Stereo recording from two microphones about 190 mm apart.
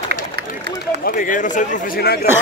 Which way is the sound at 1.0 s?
45° left (ahead or behind).